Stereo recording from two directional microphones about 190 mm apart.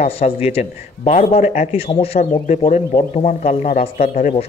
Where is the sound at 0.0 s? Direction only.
35° left (ahead or behind).